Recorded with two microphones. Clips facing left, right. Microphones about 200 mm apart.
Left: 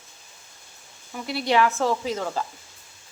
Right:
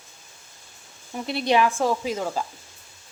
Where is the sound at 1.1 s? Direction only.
25° right (ahead or behind).